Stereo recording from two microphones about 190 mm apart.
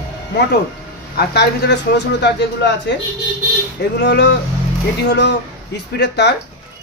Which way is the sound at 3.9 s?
65° left (ahead or behind).